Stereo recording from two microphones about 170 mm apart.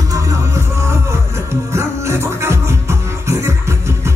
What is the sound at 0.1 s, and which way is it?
Music, 15° right (ahead or behind).